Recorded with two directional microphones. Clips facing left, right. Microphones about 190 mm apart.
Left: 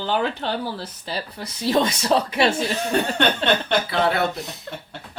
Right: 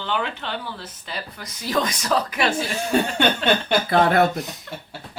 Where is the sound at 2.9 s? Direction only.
5° right (ahead or behind).